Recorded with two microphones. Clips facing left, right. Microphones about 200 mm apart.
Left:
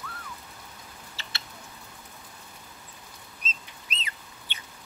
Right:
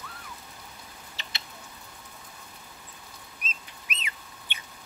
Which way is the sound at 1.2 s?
15° right (ahead or behind).